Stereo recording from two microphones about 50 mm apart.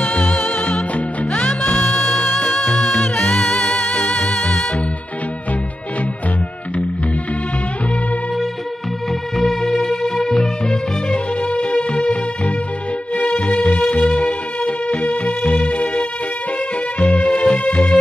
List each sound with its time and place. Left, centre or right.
0.0 s music: centre
1.3 s music: centre
9.4 s music: centre
11.4 s music: left